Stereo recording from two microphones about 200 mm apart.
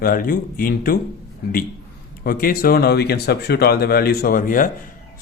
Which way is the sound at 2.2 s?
45° left (ahead or behind).